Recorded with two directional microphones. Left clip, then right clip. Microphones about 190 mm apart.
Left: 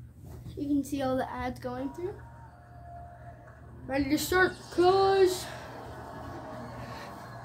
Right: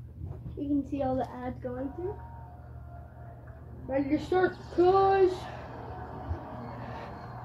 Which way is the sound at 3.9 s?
40° left (ahead or behind).